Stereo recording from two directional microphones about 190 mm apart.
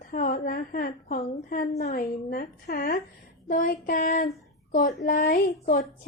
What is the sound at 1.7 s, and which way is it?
A woman's voice, 50° left (ahead or behind).